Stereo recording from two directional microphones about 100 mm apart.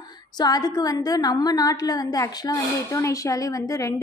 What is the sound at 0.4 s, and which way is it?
A woman's voice, 40° left (ahead or behind).